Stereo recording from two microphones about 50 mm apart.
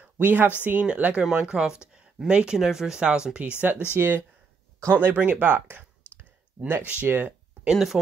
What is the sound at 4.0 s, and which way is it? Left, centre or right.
Speech, right.